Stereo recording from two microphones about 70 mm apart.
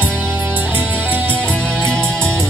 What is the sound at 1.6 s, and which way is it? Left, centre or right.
Music, centre.